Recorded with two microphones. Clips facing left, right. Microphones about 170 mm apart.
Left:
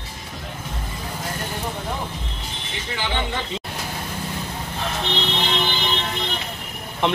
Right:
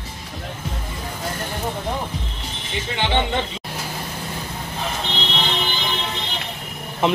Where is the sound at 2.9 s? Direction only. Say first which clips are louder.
Right 5 dB; 25° right (ahead or behind).